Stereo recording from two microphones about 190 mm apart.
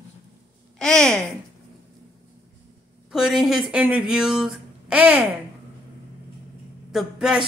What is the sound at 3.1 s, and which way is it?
Speech, centre (ahead or behind).